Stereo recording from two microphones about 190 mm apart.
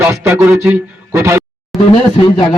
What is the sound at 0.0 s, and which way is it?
Speech, 10° right (ahead or behind).